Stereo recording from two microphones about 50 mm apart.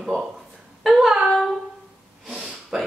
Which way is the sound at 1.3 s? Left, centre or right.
Centre.